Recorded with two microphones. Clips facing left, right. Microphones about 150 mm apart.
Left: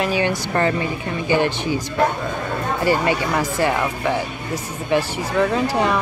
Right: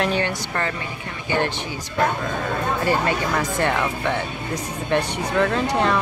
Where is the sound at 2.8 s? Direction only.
5° left (ahead or behind).